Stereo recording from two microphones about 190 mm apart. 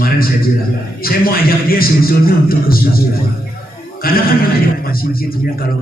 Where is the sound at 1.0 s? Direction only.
50° left (ahead or behind).